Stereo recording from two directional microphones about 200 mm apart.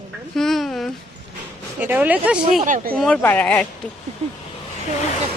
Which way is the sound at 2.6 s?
40° right (ahead or behind).